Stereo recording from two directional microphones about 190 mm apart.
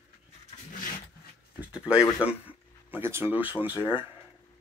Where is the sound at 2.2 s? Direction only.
10° right (ahead or behind).